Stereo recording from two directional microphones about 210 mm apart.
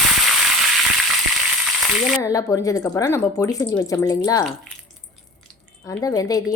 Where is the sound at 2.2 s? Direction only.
15° left (ahead or behind).